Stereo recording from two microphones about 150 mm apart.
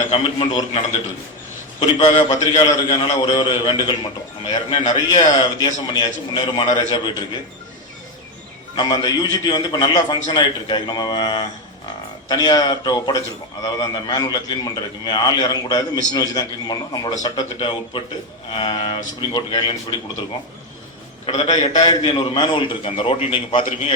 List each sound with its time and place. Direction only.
0.1 s a man's voice: 35° left (ahead or behind)
2.0 s a man's voice: 35° left (ahead or behind)
8.7 s a man's voice: 30° left (ahead or behind)
21.2 s a man's voice: 30° left (ahead or behind)